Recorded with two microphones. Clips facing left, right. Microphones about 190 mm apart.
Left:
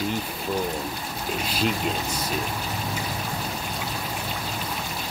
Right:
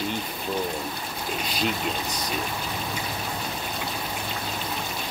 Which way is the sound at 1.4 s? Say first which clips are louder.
Left 2 dB; 5° left (ahead or behind).